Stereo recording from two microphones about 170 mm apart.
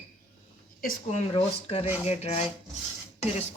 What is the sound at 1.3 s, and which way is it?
Speech, 35° left (ahead or behind).